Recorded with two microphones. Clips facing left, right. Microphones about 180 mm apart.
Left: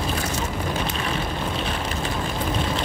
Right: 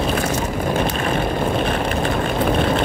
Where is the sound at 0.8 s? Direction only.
55° right (ahead or behind).